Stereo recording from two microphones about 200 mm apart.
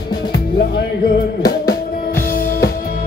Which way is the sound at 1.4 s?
50° left (ahead or behind).